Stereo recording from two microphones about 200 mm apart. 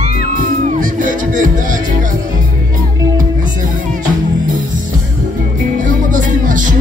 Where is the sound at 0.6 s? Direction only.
40° right (ahead or behind).